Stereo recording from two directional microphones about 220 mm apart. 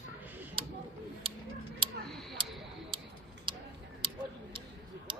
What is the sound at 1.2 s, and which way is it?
Tick-tock, 25° right (ahead or behind).